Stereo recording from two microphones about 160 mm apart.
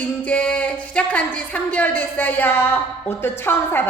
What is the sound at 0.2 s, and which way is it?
A woman's voice, 10° left (ahead or behind).